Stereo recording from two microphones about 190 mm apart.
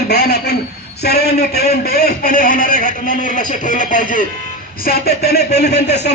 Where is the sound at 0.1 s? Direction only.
60° left (ahead or behind); by 4.2 s 45° left (ahead or behind).